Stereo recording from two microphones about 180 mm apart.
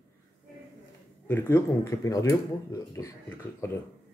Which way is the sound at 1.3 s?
15° left (ahead or behind).